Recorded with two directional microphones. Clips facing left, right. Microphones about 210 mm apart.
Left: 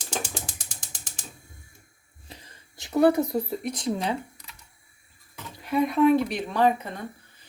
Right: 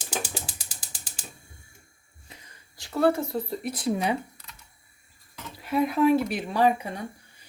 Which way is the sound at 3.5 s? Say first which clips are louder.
Even; 5° right (ahead or behind).